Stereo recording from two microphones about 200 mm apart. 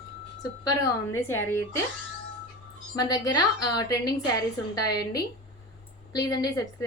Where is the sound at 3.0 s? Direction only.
20° left (ahead or behind).